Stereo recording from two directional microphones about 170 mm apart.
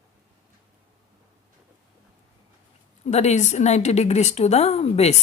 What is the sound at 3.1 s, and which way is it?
A woman's voice, 40° left (ahead or behind).